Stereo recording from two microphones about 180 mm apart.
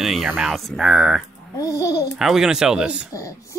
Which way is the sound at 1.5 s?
20° left (ahead or behind).